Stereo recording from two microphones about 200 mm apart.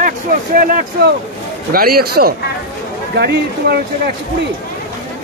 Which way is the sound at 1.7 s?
50° right (ahead or behind).